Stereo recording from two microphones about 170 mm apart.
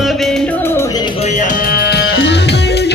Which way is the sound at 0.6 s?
15° left (ahead or behind).